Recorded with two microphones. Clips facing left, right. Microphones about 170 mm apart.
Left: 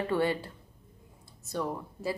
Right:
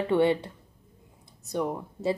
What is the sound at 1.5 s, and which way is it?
Speech, 20° right (ahead or behind).